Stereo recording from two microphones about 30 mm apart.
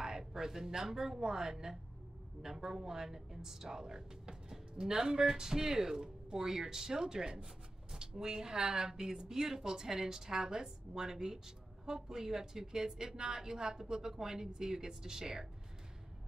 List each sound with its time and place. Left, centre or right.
0.0 s a woman's voice: centre